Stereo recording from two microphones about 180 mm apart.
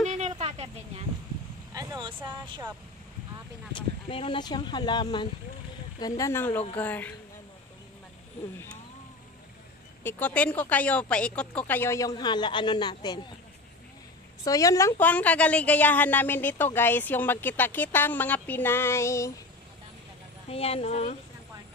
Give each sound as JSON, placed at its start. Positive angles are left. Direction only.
{"t": 0.3, "sound": "a sound", "side_deg": -35}
{"t": 1.7, "sound": "vehicle", "side_deg": -20}
{"t": 2.2, "sound": "speech", "side_deg": -25}
{"t": 3.7, "sound": "a woman's voice", "side_deg": 30}
{"t": 10.0, "sound": "a woman's voice", "side_deg": 10}
{"t": 14.4, "sound": "a woman's voice", "side_deg": 20}
{"t": 20.4, "sound": "speech", "side_deg": 35}